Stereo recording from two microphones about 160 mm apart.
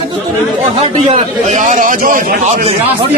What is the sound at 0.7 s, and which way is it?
A man's voice, 45° right (ahead or behind).